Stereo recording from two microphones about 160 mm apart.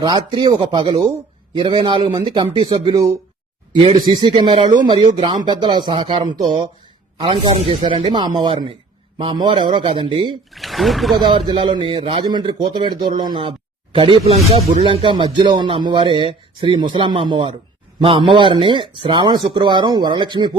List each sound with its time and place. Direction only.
0.0 s a man's voice: 25° right (ahead or behind)
10.5 s speech: centre (ahead or behind)
11.3 s a man's voice: 30° right (ahead or behind)